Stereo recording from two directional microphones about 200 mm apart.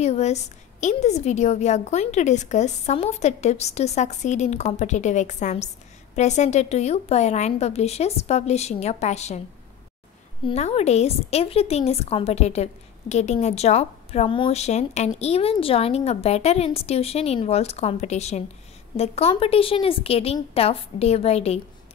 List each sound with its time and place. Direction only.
0.0 s a woman's voice: 35° left (ahead or behind)
10.4 s a woman's voice: 30° left (ahead or behind)